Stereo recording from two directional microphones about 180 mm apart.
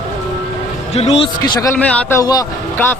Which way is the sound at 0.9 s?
35° left (ahead or behind).